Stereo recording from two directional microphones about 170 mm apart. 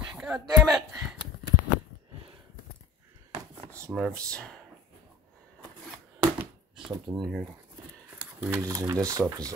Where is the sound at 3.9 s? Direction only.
5° left (ahead or behind).